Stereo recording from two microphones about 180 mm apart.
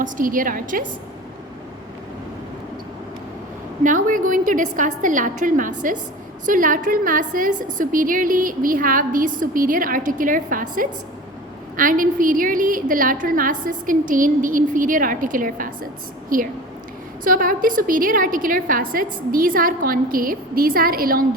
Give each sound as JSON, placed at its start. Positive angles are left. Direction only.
{"t": 0.0, "sound": "a woman's voice", "side_deg": -50}
{"t": 3.8, "sound": "a woman's voice", "side_deg": -45}